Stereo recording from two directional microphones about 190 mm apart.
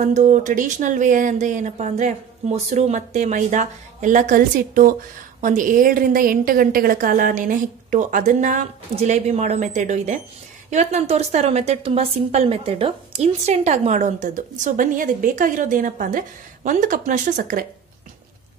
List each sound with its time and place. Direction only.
0.0 s a woman's voice: 40° right (ahead or behind)